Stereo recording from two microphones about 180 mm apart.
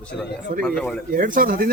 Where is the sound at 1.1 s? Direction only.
50° right (ahead or behind).